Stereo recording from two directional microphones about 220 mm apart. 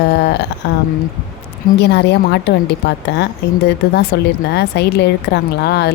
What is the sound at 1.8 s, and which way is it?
A woman's voice, 50° left (ahead or behind).